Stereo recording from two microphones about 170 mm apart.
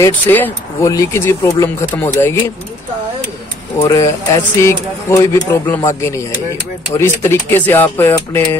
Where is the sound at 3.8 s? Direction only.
20° left (ahead or behind).